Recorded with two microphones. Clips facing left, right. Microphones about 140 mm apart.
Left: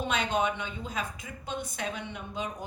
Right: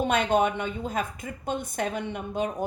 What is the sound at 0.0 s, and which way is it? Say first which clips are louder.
A woman's voice: right 6 dB; 50° right (ahead or behind).